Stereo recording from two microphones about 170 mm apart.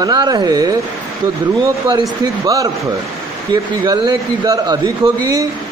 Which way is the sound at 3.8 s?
25° right (ahead or behind).